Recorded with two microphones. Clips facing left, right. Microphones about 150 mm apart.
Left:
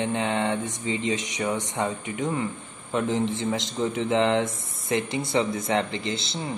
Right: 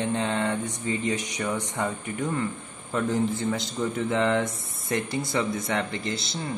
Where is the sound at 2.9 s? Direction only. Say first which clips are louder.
Even; 25° left (ahead or behind).